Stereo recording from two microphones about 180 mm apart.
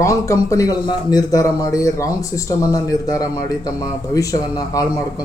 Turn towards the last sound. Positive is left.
turn(degrees=20)  # may be behind; listen again after turning